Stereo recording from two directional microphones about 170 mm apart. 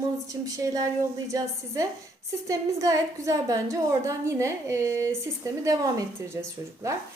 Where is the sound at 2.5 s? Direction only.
20° right (ahead or behind).